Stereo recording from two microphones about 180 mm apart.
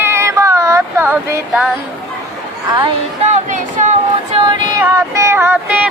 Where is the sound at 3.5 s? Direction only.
40° right (ahead or behind).